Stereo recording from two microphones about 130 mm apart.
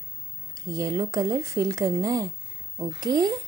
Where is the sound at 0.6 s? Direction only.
25° right (ahead or behind).